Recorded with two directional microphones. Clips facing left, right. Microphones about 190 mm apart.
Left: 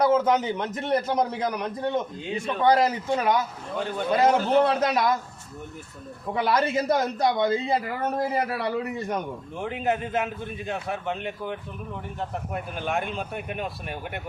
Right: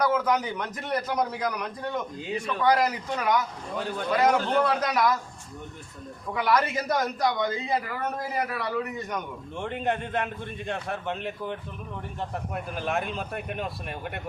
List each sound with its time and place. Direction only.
0.0 s a man's voice: 25° left (ahead or behind)
3.8 s a man's voice: centre (ahead or behind)
4.1 s a man's voice: 25° left (ahead or behind)
6.3 s a man's voice: 30° left (ahead or behind)
9.6 s a man's voice: 5° left (ahead or behind)
12.5 s a man's voice: centre (ahead or behind)